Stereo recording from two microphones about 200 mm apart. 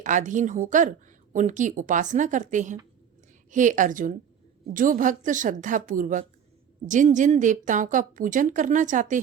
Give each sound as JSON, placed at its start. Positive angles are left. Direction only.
{"t": 0.0, "sound": "a woman's voice", "side_deg": -40}